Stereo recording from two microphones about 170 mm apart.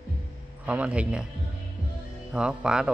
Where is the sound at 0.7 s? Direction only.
5° right (ahead or behind).